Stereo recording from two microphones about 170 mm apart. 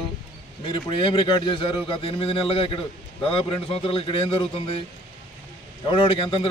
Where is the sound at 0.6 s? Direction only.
30° left (ahead or behind).